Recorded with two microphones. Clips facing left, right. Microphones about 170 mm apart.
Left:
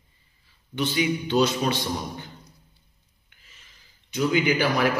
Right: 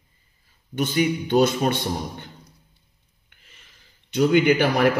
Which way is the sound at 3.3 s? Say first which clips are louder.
Right 2 dB; 60° right (ahead or behind).